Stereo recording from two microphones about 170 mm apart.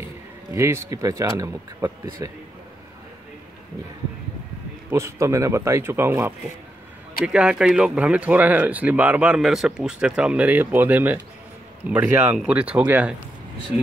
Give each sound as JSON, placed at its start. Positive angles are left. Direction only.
{"t": 0.6, "sound": "speech", "side_deg": -15}
{"t": 4.9, "sound": "a man's voice", "side_deg": -15}